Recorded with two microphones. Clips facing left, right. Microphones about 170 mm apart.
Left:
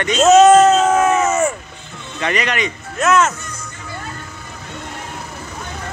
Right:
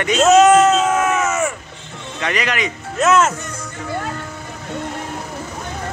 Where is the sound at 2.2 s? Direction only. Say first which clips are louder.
Left 1 dB; centre (ahead or behind).